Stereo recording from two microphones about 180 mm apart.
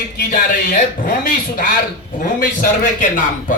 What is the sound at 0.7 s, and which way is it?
Speech, 55° left (ahead or behind).